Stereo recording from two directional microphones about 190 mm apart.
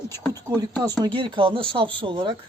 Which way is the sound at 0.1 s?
15° left (ahead or behind).